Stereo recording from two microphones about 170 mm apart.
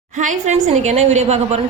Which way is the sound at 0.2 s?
45° right (ahead or behind).